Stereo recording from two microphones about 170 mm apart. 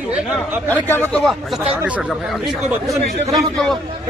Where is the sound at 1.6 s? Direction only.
10° right (ahead or behind).